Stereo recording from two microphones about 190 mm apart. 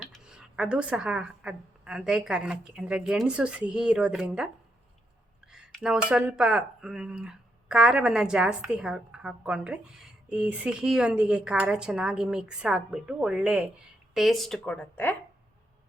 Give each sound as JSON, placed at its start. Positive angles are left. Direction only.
{"t": 0.0, "sound": "speech", "side_deg": 0}
{"t": 5.5, "sound": "a sound", "side_deg": -5}
{"t": 6.1, "sound": "speech", "side_deg": -5}